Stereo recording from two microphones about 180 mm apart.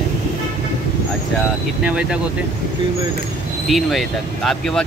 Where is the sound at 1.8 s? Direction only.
5° right (ahead or behind).